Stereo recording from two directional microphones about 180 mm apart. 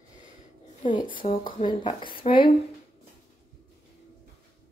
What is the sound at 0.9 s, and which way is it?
Speech, 30° left (ahead or behind).